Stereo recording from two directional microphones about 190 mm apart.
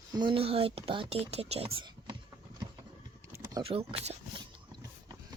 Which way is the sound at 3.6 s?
30° right (ahead or behind).